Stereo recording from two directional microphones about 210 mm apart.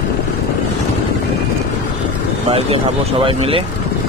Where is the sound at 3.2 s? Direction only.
25° right (ahead or behind).